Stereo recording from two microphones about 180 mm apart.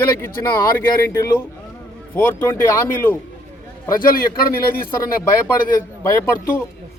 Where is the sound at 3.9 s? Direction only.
50° left (ahead or behind).